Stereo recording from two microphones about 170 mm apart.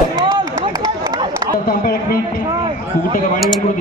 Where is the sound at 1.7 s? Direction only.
60° left (ahead or behind).